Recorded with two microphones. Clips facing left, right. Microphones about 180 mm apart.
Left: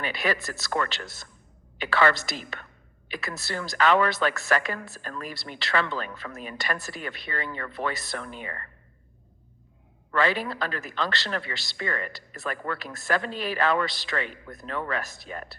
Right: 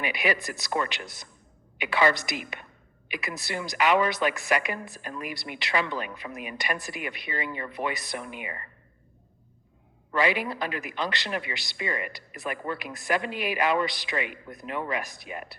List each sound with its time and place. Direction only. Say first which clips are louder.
0.0 s speech: even; 15° right (ahead or behind)
10.1 s speech: even; 15° right (ahead or behind)